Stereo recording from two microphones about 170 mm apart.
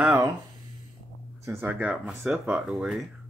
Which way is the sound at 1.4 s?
15° right (ahead or behind).